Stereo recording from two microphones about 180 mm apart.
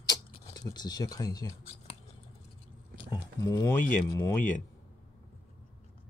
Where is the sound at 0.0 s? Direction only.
20° left (ahead or behind).